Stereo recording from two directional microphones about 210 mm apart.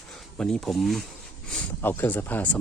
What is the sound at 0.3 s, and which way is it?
Speech, 5° left (ahead or behind).